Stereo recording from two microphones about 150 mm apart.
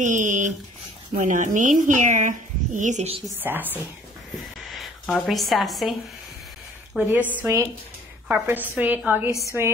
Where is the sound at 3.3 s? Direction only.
15° right (ahead or behind).